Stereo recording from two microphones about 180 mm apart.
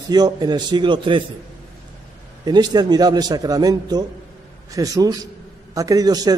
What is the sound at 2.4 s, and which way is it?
A man's voice, 25° right (ahead or behind).